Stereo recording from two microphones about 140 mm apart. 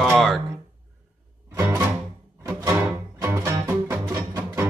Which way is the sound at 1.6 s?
20° right (ahead or behind).